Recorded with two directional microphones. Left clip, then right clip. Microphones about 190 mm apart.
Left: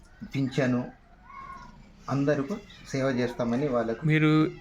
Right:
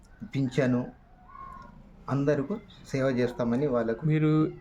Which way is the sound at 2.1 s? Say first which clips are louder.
Even; 5° right (ahead or behind).